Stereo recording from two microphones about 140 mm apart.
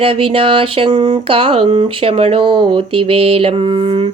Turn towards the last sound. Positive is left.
turn(degrees=-40)  # may be behind; listen again after turning